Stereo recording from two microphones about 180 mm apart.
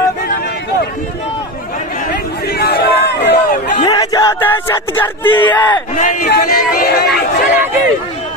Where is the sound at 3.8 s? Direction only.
20° left (ahead or behind).